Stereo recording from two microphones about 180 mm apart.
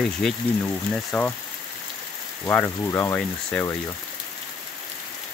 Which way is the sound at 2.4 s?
10° left (ahead or behind).